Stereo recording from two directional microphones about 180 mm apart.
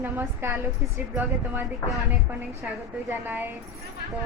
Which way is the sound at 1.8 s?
20° left (ahead or behind).